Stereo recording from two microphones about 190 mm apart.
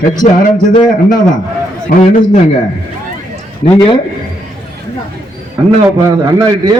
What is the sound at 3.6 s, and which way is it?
Speech, 25° left (ahead or behind).